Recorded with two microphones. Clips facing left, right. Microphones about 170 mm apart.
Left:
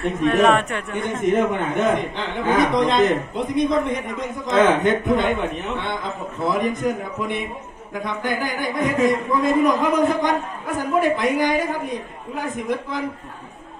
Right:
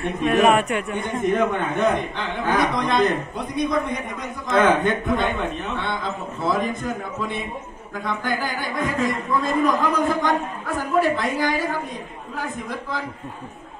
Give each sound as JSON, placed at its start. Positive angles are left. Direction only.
{"t": 0.0, "sound": "speech", "side_deg": 0}
{"t": 1.2, "sound": "a man's voice", "side_deg": 20}